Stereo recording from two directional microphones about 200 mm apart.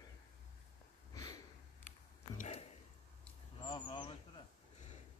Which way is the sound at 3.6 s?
25° left (ahead or behind).